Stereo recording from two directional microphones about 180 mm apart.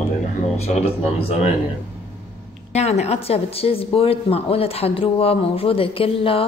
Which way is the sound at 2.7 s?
35° left (ahead or behind).